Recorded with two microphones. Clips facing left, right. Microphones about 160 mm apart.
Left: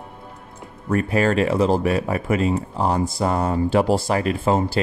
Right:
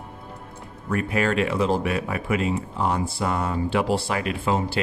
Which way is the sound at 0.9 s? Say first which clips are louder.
Left 4 dB; 35° left (ahead or behind).